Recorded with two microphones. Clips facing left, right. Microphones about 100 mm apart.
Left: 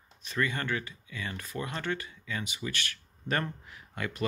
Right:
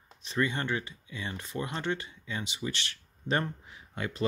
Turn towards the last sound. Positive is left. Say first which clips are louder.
# right 2 dB
turn(degrees=-25)  # may be behind; listen again after turning